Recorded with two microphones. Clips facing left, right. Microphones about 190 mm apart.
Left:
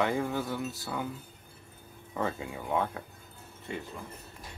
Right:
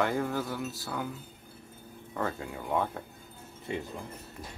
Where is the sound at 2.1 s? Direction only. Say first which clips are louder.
Left 1 dB; 5° left (ahead or behind).